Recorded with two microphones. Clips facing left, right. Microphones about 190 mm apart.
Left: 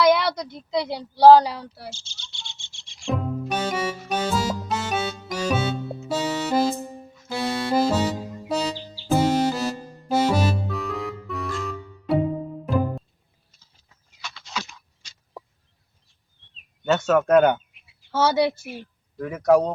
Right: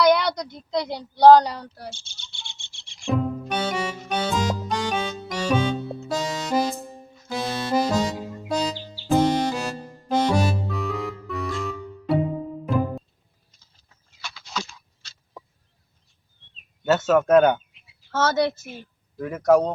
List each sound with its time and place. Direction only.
0.0 s a woman's voice: 5° left (ahead or behind)
1.9 s a sound: 60° right (ahead or behind)
3.1 s music: 5° left (ahead or behind)
9.0 s music: 5° left (ahead or behind)
14.2 s a sound: centre (ahead or behind)
14.7 s a sound: 15° left (ahead or behind)
16.8 s speech: 5° right (ahead or behind)
18.1 s a woman's voice: 10° left (ahead or behind)
19.1 s speech: centre (ahead or behind)